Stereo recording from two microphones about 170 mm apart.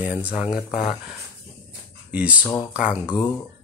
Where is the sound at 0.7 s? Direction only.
35° left (ahead or behind).